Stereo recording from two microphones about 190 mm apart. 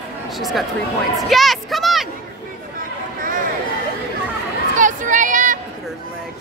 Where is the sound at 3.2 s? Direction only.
45° right (ahead or behind).